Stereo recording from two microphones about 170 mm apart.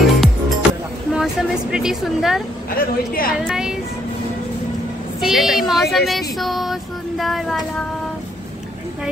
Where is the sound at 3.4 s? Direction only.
5° right (ahead or behind).